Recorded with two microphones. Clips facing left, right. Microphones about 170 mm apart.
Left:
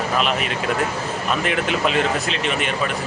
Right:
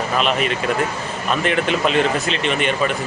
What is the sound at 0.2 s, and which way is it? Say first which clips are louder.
Speech: right 2 dB; centre (ahead or behind).